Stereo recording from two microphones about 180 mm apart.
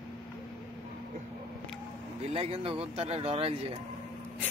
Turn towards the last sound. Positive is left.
turn(degrees=-35)  # may be behind; listen again after turning